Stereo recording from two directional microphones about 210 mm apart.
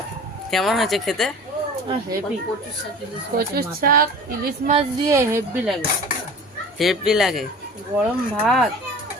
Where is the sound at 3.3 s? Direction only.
45° right (ahead or behind).